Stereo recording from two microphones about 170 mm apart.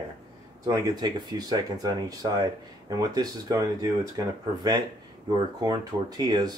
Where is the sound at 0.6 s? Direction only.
20° right (ahead or behind).